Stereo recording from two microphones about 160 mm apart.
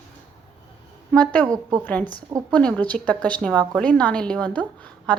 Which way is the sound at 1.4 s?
25° right (ahead or behind).